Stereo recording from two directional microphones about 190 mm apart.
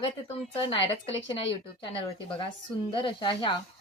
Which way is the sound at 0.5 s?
30° left (ahead or behind).